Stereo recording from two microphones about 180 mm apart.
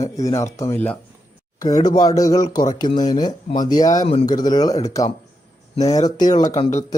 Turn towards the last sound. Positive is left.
turn(degrees=40)  # may be behind; listen again after turning